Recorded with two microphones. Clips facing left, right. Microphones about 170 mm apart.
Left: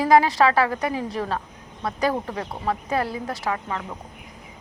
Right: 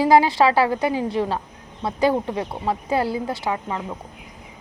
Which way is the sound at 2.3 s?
25° right (ahead or behind).